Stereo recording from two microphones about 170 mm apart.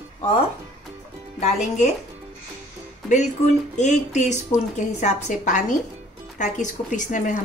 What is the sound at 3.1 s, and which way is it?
Speech, 45° left (ahead or behind).